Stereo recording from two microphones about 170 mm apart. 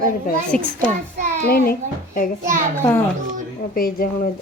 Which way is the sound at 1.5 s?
60° left (ahead or behind).